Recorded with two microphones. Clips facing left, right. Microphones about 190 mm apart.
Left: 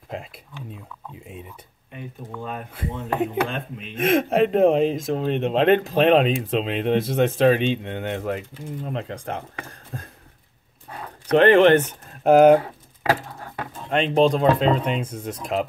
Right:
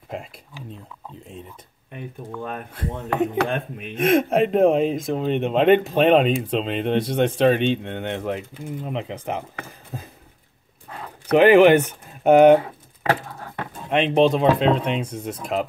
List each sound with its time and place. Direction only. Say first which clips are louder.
0.1 s speech: right 1 dB; centre (ahead or behind)
3.4 s speech: right 4 dB; 55° right (ahead or behind)
3.9 s speech: right 2 dB; centre (ahead or behind)
11.2 s speech: right 2 dB; 10° right (ahead or behind)
13.8 s speech: right 1 dB; 5° right (ahead or behind)